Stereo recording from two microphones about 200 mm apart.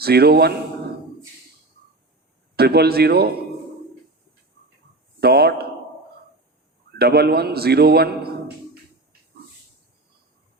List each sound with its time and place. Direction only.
0.0 s a man's voice: 50° right (ahead or behind)
2.6 s a man's voice: 50° right (ahead or behind)
5.2 s a man's voice: 50° right (ahead or behind)
7.0 s a man's voice: 50° right (ahead or behind)